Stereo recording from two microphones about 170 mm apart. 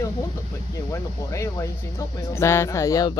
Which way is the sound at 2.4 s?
15° left (ahead or behind).